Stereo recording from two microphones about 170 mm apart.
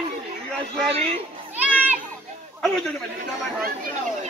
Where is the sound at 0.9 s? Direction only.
35° right (ahead or behind).